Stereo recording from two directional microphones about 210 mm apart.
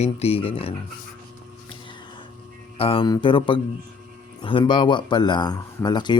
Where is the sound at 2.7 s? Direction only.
25° left (ahead or behind).